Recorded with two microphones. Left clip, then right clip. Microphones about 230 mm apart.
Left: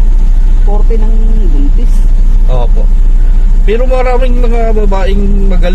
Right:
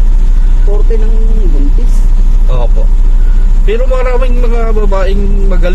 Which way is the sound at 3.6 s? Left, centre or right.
Centre.